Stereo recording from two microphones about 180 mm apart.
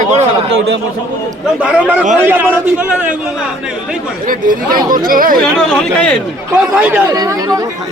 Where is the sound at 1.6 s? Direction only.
5° right (ahead or behind).